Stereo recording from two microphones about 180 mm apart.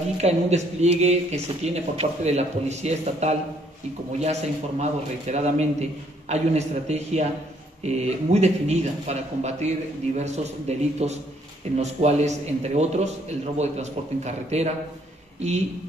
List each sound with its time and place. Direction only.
0.2 s speech: 35° right (ahead or behind)